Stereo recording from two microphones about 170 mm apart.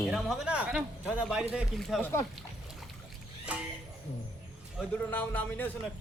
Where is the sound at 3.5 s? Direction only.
5° right (ahead or behind).